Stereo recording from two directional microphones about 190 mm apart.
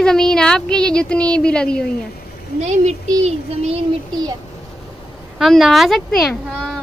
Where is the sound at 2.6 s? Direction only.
35° right (ahead or behind).